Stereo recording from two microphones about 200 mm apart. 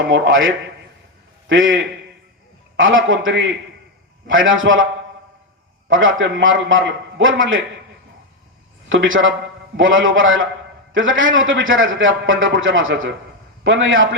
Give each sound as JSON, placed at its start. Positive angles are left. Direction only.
{"t": 0.1, "sound": "a man's voice", "side_deg": -75}
{"t": 5.9, "sound": "a man's voice", "side_deg": -75}
{"t": 8.9, "sound": "a man's voice", "side_deg": -75}